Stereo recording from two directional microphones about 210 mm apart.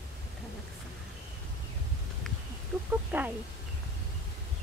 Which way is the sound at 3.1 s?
10° right (ahead or behind).